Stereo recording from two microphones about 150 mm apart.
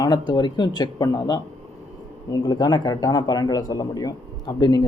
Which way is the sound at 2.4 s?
25° left (ahead or behind).